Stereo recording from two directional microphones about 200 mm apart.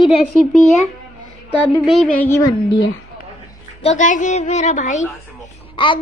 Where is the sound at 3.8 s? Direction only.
35° left (ahead or behind).